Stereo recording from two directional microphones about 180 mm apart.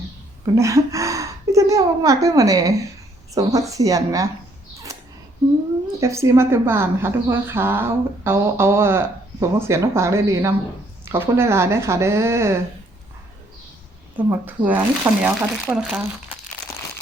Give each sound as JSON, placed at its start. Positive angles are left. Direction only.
{"t": 0.5, "sound": "a woman's voice", "side_deg": -15}
{"t": 6.0, "sound": "speech", "side_deg": -15}
{"t": 14.3, "sound": "speech", "side_deg": -10}